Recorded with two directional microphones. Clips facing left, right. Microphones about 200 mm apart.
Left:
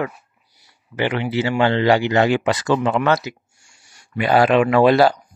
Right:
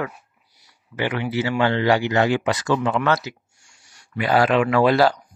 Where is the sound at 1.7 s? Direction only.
25° left (ahead or behind).